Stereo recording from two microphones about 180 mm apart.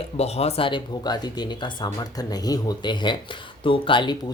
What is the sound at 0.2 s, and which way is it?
Speech, 35° left (ahead or behind).